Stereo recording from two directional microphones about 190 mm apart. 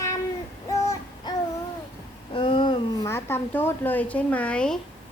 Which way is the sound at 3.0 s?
10° left (ahead or behind).